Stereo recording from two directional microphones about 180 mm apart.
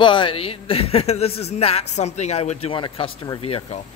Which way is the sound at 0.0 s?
25° left (ahead or behind).